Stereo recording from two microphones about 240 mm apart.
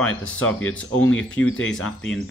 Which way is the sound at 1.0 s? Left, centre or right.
Centre.